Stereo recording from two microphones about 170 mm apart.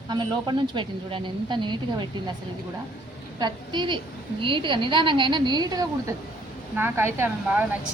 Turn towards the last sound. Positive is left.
turn(degrees=-15)  # may be behind; listen again after turning